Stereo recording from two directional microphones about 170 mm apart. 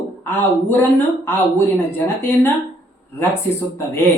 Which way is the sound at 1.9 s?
10° left (ahead or behind).